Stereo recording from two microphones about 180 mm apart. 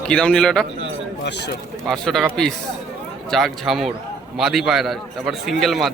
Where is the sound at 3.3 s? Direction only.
Centre (ahead or behind).